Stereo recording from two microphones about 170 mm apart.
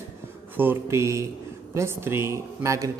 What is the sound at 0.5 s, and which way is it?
Speech, 15° right (ahead or behind).